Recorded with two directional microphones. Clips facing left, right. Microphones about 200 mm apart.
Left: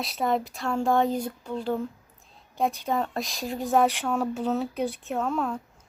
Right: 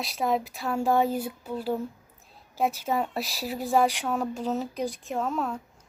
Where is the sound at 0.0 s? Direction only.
Centre (ahead or behind).